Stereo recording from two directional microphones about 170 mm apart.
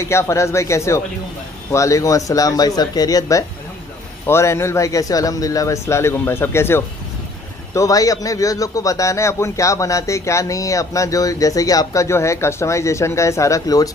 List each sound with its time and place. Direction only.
0.0 s a man's voice: 15° left (ahead or behind)